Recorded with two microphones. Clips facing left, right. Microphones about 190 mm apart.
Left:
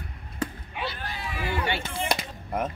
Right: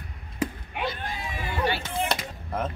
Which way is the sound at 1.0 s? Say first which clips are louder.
Right 2 dB; 20° right (ahead or behind).